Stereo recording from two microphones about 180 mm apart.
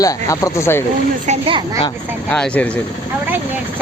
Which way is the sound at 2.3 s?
5° left (ahead or behind).